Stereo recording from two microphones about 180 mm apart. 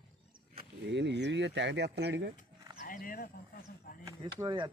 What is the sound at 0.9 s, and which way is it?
Speech, 75° right (ahead or behind).